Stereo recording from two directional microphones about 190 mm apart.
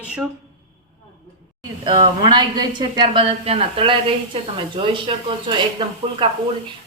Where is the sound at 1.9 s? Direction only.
25° right (ahead or behind).